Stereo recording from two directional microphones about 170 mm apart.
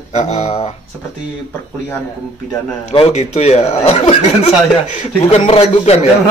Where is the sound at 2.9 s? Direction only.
40° left (ahead or behind).